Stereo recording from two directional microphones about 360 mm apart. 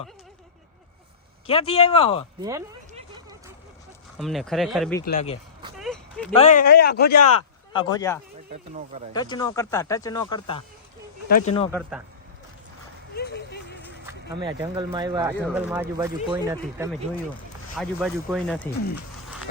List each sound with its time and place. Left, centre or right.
1.5 s speech: centre
2.4 s a sound: centre
4.2 s speech: centre
5.0 s speech: centre
5.7 s a sound: centre
6.3 s a man's voice: centre
7.7 s speech: centre
8.4 s speech: right
9.1 s a man's voice: centre
11.7 s speech: centre
13.1 s a sound: left
14.4 s speech: centre